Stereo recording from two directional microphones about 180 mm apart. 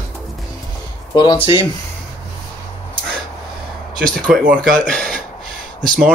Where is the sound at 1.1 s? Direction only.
25° left (ahead or behind).